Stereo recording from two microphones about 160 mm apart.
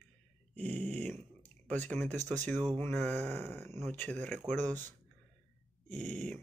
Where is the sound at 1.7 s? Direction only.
10° left (ahead or behind).